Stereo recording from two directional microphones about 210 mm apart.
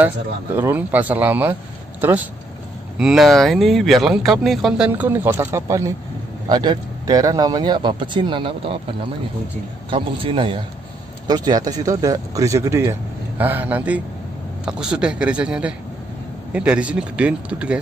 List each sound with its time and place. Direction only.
0.6 s speech: 10° right (ahead or behind); by 8.7 s 25° right (ahead or behind)
9.8 s speech: 25° right (ahead or behind); by 17.7 s 5° right (ahead or behind)